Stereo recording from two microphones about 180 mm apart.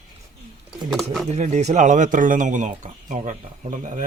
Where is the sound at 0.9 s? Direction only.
Centre (ahead or behind).